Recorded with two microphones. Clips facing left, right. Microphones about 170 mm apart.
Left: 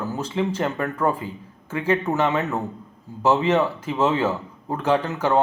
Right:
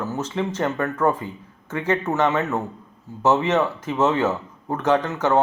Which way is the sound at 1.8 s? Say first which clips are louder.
Even; 15° left (ahead or behind).